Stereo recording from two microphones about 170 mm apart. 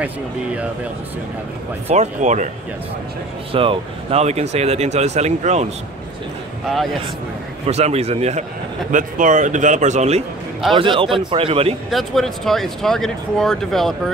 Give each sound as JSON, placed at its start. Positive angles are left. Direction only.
{"t": 0.0, "sound": "speech", "side_deg": -10}
{"t": 1.9, "sound": "speech", "side_deg": -45}
{"t": 3.5, "sound": "speech", "side_deg": -30}
{"t": 6.7, "sound": "speech", "side_deg": 0}
{"t": 7.6, "sound": "speech", "side_deg": -40}
{"t": 10.7, "sound": "speech", "side_deg": -30}
{"t": 11.9, "sound": "speech", "side_deg": 0}